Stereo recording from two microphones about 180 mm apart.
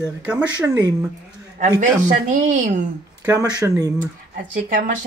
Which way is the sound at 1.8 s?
40° right (ahead or behind).